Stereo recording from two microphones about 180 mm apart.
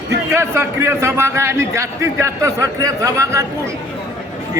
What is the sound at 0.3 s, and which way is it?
Speech, 15° right (ahead or behind).